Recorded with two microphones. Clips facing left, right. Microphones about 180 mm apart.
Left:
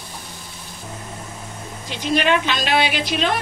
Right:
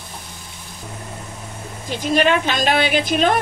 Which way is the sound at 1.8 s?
45° right (ahead or behind).